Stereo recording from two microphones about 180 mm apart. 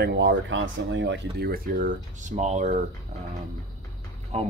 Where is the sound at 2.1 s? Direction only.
40° right (ahead or behind).